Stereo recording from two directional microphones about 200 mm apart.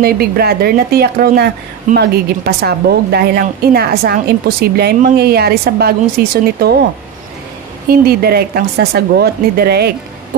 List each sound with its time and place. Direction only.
0.0 s a woman's voice: 50° right (ahead or behind)
7.9 s a woman's voice: 50° right (ahead or behind)